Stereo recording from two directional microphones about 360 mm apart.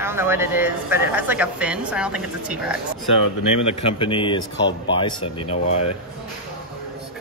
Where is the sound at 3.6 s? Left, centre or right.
Centre.